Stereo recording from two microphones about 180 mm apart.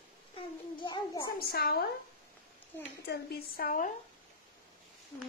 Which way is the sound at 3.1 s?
60° left (ahead or behind).